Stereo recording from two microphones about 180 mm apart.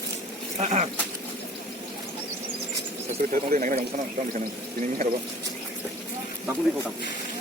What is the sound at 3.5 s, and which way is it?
Speech, 45° right (ahead or behind).